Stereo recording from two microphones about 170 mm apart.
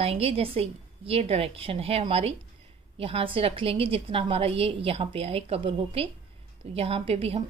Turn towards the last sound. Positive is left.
turn(degrees=-35)  # may be behind; listen again after turning